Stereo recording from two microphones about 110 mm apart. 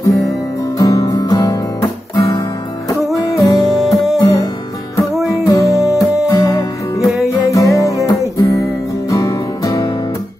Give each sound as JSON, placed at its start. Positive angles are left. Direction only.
{"t": 0.1, "sound": "guitar", "side_deg": 0}
{"t": 0.7, "sound": "guitar", "side_deg": 30}
{"t": 3.2, "sound": "music", "side_deg": 30}
{"t": 3.8, "sound": "music", "side_deg": 0}
{"t": 4.2, "sound": "music", "side_deg": 30}